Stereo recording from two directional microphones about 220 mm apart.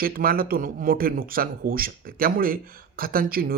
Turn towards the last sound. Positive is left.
turn(degrees=-40)  # may be behind; listen again after turning